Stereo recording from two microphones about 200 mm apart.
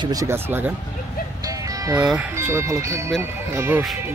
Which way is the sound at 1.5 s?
15° right (ahead or behind).